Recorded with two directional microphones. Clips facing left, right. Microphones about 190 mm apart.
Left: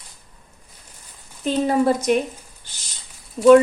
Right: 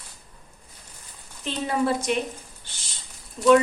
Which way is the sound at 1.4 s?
45° left (ahead or behind).